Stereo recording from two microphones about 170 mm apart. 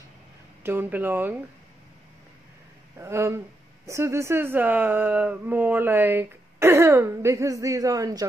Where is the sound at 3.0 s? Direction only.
15° right (ahead or behind).